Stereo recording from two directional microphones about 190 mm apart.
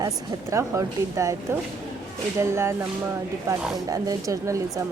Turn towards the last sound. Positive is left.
turn(degrees=-15)  # may be behind; listen again after turning